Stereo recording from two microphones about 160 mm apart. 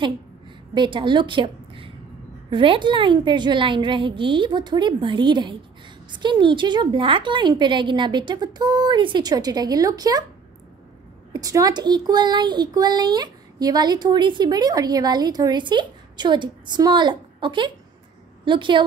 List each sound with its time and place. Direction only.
0.7 s a woman's voice: 30° right (ahead or behind)
11.3 s a child's voice: 25° right (ahead or behind)